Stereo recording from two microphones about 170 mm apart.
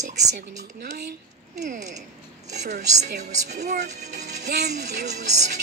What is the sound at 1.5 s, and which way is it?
Music, 45° right (ahead or behind).